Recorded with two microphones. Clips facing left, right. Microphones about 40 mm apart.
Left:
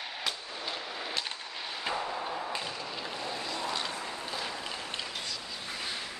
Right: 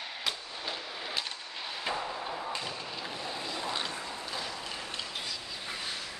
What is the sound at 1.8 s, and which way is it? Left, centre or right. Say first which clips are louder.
Thump: left 1 dB; centre.